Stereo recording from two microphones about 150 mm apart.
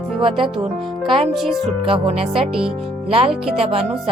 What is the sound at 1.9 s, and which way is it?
Speech, 40° right (ahead or behind).